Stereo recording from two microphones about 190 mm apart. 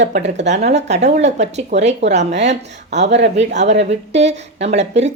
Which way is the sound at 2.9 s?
65° right (ahead or behind).